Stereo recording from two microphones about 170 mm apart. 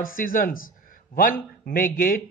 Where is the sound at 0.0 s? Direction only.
55° left (ahead or behind).